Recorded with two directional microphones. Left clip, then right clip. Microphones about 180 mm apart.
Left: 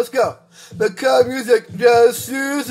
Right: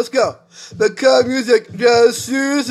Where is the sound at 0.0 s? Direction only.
20° right (ahead or behind).